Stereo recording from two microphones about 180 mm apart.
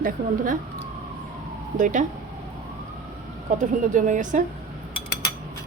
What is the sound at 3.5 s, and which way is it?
Speech, 45° right (ahead or behind).